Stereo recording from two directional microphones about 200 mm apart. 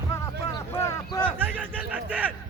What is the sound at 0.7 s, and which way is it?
Speech, 15° left (ahead or behind).